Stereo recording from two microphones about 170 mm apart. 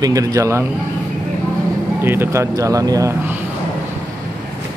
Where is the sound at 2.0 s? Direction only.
15° right (ahead or behind).